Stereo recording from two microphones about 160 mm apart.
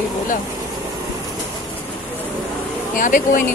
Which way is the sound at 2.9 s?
55° left (ahead or behind).